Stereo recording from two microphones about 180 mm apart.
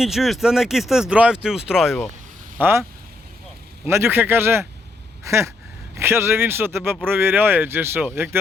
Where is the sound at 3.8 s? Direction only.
15° right (ahead or behind).